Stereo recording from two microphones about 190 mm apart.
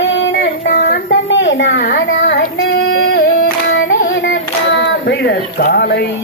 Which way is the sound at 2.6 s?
85° left.